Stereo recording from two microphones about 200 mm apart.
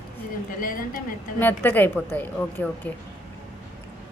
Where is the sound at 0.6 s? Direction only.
45° left (ahead or behind).